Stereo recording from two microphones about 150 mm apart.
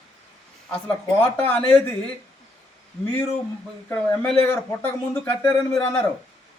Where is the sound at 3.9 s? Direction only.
10° left (ahead or behind).